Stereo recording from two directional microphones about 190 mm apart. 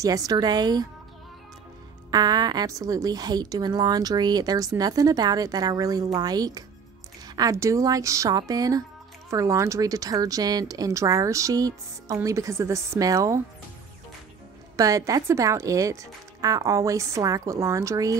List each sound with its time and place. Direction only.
0.0 s a woman's voice: 20° right (ahead or behind)
2.0 s a woman's voice: 20° right (ahead or behind)
14.8 s a woman's voice: 15° right (ahead or behind)